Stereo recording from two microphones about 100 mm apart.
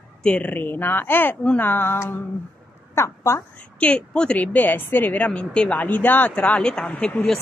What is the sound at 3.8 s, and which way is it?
Speech, 10° left (ahead or behind).